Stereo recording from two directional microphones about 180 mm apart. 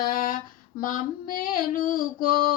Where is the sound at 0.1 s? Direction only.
50° left (ahead or behind).